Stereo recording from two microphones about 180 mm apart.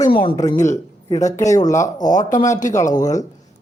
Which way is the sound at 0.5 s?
40° left (ahead or behind).